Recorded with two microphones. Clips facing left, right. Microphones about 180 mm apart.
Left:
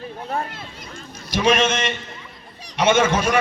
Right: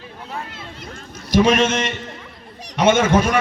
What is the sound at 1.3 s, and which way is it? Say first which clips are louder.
A man's voice: right 3 dB; 50° right (ahead or behind).